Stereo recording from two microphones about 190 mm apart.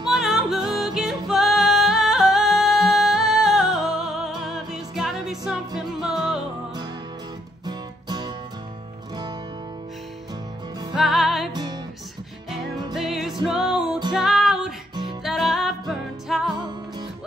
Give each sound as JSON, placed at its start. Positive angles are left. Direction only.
{"t": 0.0, "sound": "music", "side_deg": 0}
{"t": 7.6, "sound": "music", "side_deg": -20}
{"t": 11.0, "sound": "music", "side_deg": 0}
{"t": 11.5, "sound": "music", "side_deg": -20}
{"t": 12.9, "sound": "music", "side_deg": 0}